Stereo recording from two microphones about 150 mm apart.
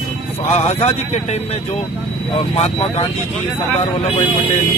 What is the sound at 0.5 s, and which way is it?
Speech, 45° left (ahead or behind).